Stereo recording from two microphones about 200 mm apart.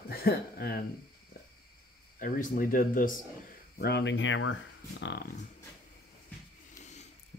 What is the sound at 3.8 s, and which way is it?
Speech, 55° left (ahead or behind).